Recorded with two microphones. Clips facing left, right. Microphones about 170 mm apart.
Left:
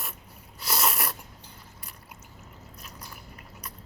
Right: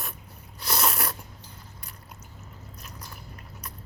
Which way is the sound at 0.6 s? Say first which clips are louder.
Right 1 dB; 5° left (ahead or behind).